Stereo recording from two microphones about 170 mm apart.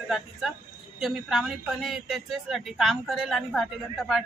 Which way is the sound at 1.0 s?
Centre (ahead or behind).